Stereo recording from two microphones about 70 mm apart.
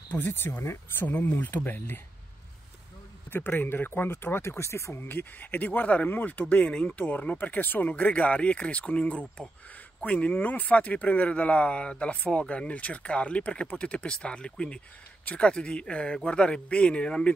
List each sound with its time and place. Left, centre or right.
0.3 s speech: left
1.0 s speech: left
3.3 s speech: left
5.0 s speech: left